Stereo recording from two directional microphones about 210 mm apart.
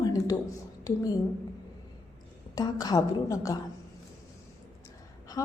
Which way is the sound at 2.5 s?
20° left (ahead or behind).